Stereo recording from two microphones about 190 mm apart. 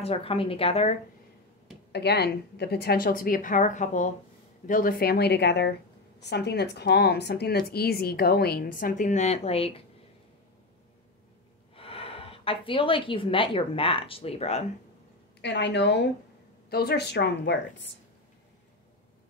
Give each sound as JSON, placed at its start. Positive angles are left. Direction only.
{"t": 0.0, "sound": "speech", "side_deg": 30}
{"t": 1.9, "sound": "a woman's voice", "side_deg": 60}
{"t": 11.7, "sound": "speech", "side_deg": 30}
{"t": 15.4, "sound": "a woman's voice", "side_deg": 65}